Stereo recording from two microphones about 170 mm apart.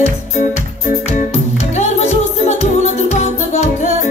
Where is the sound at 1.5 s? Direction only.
40° left (ahead or behind).